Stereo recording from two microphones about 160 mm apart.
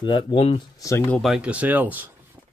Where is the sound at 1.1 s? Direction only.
Centre (ahead or behind).